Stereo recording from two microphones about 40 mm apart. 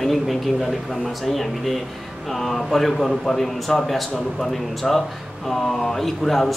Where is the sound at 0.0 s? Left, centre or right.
Centre.